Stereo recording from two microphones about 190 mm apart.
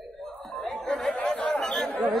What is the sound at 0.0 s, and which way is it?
Chatter, centre (ahead or behind).